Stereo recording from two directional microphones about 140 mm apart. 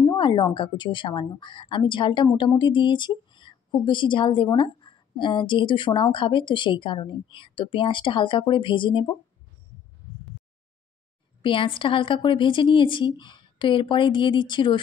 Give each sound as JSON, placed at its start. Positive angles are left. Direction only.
{"t": 0.0, "sound": "a woman's voice", "side_deg": 35}
{"t": 11.4, "sound": "a woman's voice", "side_deg": 40}